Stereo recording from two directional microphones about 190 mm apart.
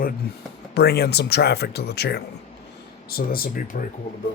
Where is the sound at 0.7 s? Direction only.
55° left (ahead or behind).